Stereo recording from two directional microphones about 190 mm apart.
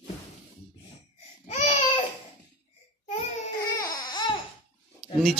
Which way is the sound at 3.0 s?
30° left (ahead or behind).